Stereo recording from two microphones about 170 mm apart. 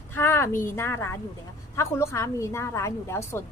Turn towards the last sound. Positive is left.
turn(degrees=15)  # may be behind; listen again after turning